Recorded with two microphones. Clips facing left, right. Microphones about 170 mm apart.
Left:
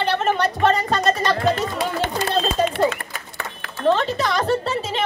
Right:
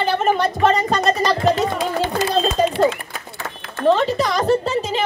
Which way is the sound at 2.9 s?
65° left (ahead or behind).